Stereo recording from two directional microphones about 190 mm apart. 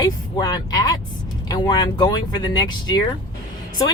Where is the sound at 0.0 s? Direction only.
20° left (ahead or behind).